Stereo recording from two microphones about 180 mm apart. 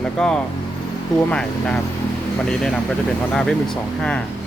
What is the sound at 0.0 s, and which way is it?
Vehicle, 5° left (ahead or behind).